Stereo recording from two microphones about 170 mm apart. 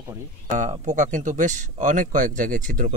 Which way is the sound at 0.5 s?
45° right (ahead or behind).